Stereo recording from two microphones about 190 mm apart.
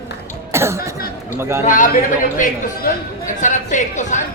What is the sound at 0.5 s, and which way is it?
Cough, 15° right (ahead or behind).